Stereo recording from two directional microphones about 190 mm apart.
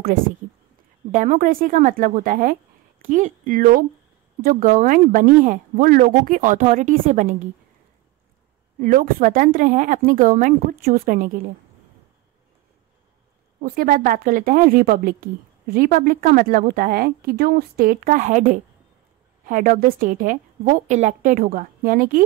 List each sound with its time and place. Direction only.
1.1 s speech: 40° right (ahead or behind)
8.7 s speech: 45° right (ahead or behind)
13.6 s speech: 50° right (ahead or behind)